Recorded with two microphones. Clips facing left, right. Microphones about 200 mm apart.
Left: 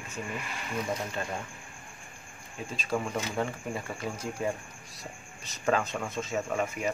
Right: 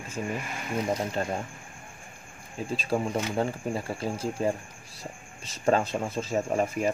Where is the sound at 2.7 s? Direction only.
30° right (ahead or behind).